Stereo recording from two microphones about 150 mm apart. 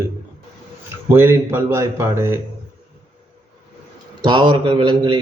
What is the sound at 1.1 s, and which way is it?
A man's voice, 15° right (ahead or behind).